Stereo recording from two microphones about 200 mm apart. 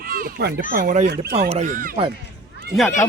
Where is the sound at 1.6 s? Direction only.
40° right (ahead or behind).